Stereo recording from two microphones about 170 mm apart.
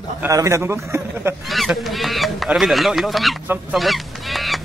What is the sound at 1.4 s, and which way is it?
Speech, centre (ahead or behind).